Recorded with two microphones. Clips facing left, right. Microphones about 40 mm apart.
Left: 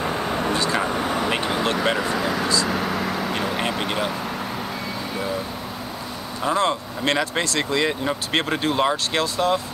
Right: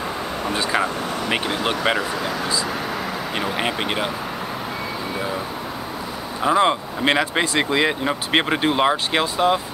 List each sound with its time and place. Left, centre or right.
0.5 s speech: centre
2.0 s speech: centre
2.4 s speech: centre
2.8 s vehicle: centre
3.3 s speech: centre
6.4 s speech: centre